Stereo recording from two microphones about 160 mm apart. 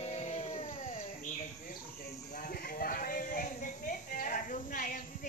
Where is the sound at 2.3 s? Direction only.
60° left (ahead or behind).